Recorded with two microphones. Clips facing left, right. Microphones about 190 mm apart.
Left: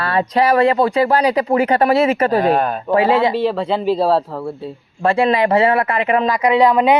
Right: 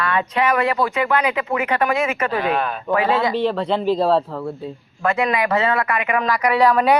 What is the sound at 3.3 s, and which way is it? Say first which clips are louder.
Speech: left 2 dB; 5° left (ahead or behind).